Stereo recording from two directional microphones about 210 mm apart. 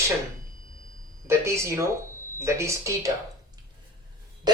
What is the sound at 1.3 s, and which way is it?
Speech, 15° right (ahead or behind).